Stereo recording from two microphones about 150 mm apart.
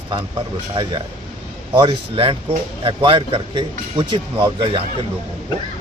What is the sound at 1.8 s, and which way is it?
A man's voice, 35° right (ahead or behind).